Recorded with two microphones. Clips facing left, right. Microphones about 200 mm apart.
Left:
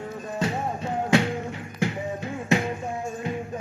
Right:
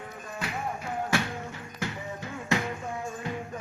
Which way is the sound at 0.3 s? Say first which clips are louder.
Left 6 dB; 30° left (ahead or behind).